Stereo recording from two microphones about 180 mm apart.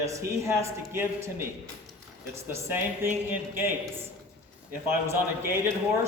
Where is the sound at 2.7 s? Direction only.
10° right (ahead or behind).